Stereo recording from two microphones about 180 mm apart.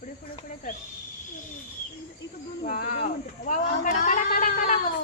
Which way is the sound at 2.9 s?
45° left (ahead or behind).